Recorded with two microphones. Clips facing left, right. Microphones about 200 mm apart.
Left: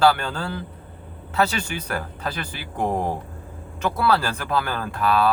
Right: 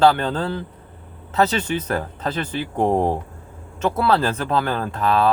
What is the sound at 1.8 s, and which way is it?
Speech, 25° right (ahead or behind).